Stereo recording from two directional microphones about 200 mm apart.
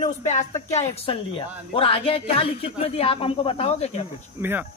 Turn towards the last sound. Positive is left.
turn(degrees=-10)  # may be behind; listen again after turning